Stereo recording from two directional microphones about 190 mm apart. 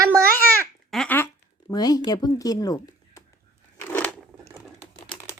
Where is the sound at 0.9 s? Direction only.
5° left (ahead or behind).